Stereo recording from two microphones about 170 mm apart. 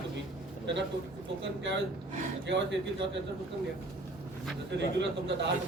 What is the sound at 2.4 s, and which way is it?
Speech, 90° right.